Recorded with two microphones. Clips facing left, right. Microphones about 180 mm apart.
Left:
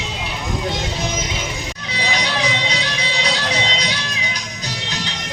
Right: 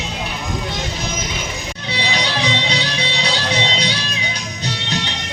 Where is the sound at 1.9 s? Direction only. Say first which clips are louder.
Right 1 dB; 30° right (ahead or behind).